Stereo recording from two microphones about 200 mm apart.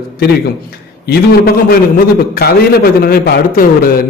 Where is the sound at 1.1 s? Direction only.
50° left (ahead or behind).